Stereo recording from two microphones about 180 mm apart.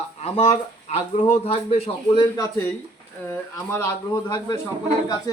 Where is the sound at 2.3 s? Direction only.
15° left (ahead or behind).